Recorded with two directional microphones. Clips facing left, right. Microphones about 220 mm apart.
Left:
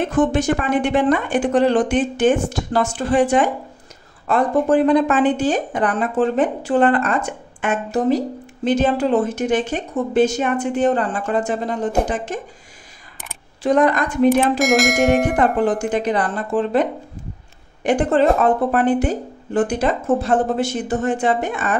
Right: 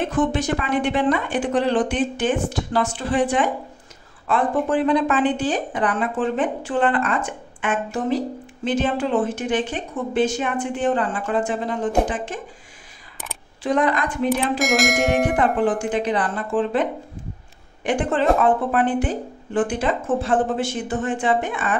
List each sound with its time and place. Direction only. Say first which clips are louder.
0.1 s speech: left 4 dB; 45° left (ahead or behind)
13.6 s speech: left 4 dB; 40° left (ahead or behind)
14.6 s speech: left 4 dB; centre (ahead or behind)
15.8 s speech: left 2 dB; 40° left (ahead or behind)
17.8 s speech: left 4 dB; 40° left (ahead or behind)